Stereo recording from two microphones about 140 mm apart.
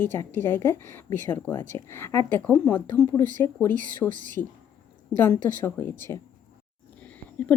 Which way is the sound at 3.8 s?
70° right (ahead or behind).